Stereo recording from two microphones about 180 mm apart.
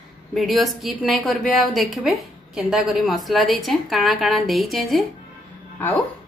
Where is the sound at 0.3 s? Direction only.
Centre (ahead or behind).